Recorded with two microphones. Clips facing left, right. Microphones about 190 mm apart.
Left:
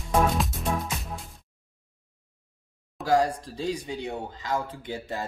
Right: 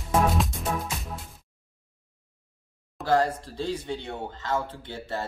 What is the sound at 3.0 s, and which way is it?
Speech, 10° left (ahead or behind).